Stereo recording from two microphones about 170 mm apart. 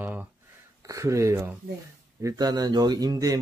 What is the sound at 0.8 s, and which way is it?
Speech, 20° right (ahead or behind).